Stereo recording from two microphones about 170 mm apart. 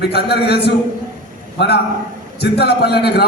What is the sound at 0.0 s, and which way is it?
A man's voice, 75° left (ahead or behind).